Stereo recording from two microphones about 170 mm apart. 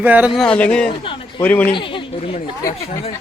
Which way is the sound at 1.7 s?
30° left (ahead or behind).